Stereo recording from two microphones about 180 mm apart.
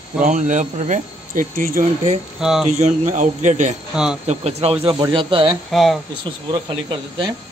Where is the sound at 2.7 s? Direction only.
40° right (ahead or behind).